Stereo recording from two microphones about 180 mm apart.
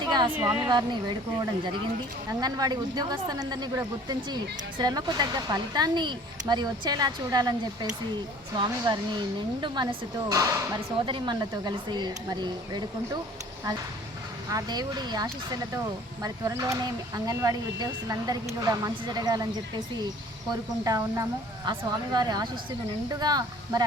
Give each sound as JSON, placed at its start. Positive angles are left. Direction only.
{"t": 0.0, "sound": "a sound", "side_deg": -25}
{"t": 0.3, "sound": "speech", "side_deg": -10}
{"t": 0.6, "sound": "speech", "side_deg": -25}
{"t": 2.4, "sound": "speech", "side_deg": -20}
{"t": 14.5, "sound": "speech", "side_deg": -20}